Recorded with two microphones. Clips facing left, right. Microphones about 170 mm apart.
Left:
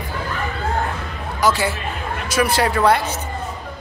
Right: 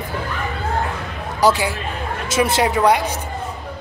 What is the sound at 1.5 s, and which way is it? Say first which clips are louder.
Speech: right 1 dB; 15° right (ahead or behind).